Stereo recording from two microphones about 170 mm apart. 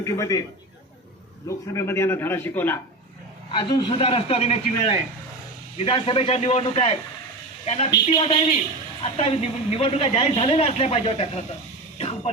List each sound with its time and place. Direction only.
0.0 s a man's voice: 20° left (ahead or behind)
1.5 s a man's voice: 15° left (ahead or behind)
3.5 s a woman's voice: 30° left (ahead or behind)
11.9 s a sound: 35° left (ahead or behind)